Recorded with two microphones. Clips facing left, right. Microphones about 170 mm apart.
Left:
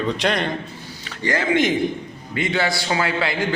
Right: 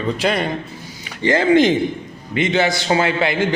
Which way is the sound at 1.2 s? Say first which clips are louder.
Right 6 dB; 25° right (ahead or behind).